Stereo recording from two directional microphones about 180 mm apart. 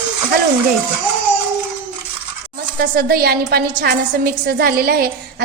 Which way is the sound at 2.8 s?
55° right (ahead or behind).